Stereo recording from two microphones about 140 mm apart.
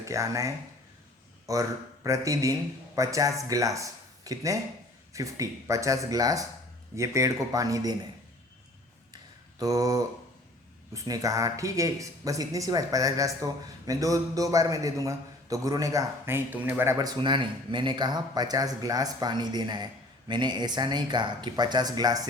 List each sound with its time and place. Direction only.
0.0 s speech: 25° right (ahead or behind)
9.6 s speech: 25° right (ahead or behind)
17.0 s speech: 30° right (ahead or behind)